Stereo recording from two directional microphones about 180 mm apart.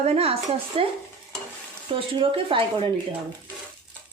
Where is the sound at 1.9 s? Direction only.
30° right (ahead or behind).